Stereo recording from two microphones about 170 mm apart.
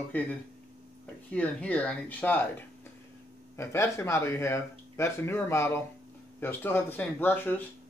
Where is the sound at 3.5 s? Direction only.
15° left (ahead or behind).